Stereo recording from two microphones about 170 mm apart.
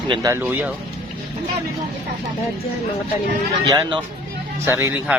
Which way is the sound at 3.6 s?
25° right (ahead or behind).